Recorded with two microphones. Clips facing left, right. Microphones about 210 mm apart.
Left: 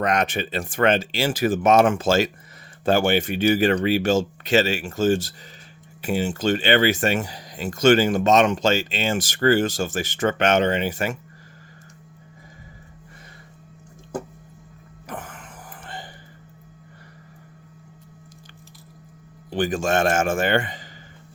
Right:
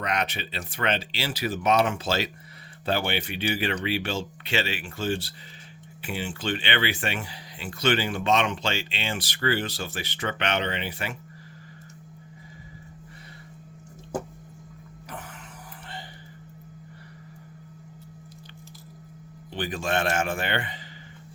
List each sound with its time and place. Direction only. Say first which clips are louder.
0.0 s speech: left 7 dB; 45° left (ahead or behind)
15.1 s music: left 5 dB; 50° left (ahead or behind)
19.5 s speech: left 7 dB; 45° left (ahead or behind)